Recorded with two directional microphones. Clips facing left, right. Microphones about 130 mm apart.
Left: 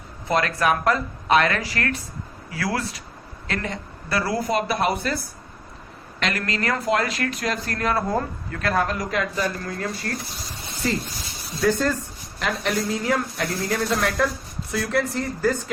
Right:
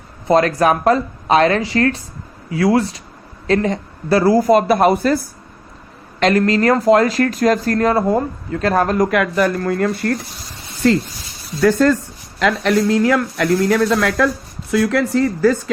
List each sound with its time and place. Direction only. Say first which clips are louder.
0.3 s a man's voice: right 8 dB; 35° right (ahead or behind)
4.4 s speech: right 10 dB; 45° right (ahead or behind)
7.9 s speech: right 7 dB; 25° right (ahead or behind)
8.7 s speech: right 8 dB; 45° right (ahead or behind); by 10.1 s 60° right (ahead or behind)
11.6 s speech: right 8 dB; 90° right